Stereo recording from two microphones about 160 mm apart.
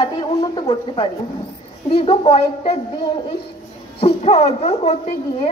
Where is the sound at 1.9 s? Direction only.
35° left (ahead or behind).